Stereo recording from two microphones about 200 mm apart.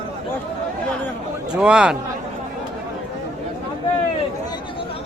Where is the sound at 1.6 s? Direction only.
5° right (ahead or behind).